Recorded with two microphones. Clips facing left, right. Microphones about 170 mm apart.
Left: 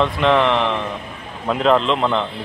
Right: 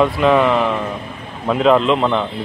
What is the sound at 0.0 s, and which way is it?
Speech, 5° right (ahead or behind).